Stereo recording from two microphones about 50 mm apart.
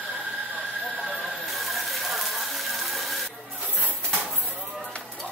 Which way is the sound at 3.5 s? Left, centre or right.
Right.